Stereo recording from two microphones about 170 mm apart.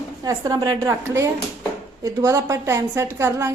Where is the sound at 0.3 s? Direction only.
20° right (ahead or behind).